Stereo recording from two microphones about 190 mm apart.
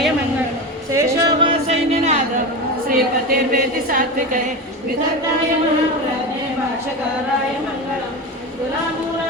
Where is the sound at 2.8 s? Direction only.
50° right (ahead or behind).